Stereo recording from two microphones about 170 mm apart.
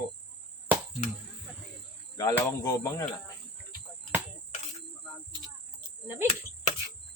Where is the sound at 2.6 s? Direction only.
25° left (ahead or behind).